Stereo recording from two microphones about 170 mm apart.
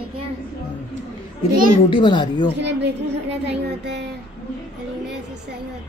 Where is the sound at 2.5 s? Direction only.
90° right.